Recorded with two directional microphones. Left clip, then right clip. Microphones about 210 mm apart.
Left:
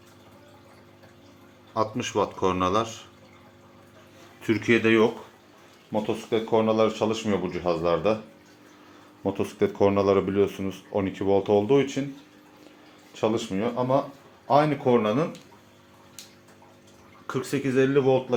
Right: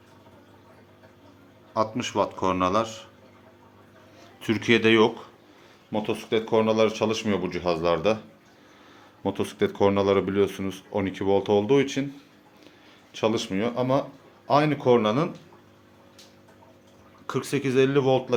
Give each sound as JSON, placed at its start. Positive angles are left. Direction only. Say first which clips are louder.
{"t": 1.7, "sound": "a man's voice", "louder": "right 1 dB", "side_deg": -5}
{"t": 4.4, "sound": "speech", "louder": "even", "side_deg": -10}
{"t": 9.2, "sound": "speech", "louder": "even", "side_deg": -5}
{"t": 13.1, "sound": "speech", "louder": "right 1 dB", "side_deg": -15}
{"t": 17.2, "sound": "speech", "louder": "right 1 dB", "side_deg": -10}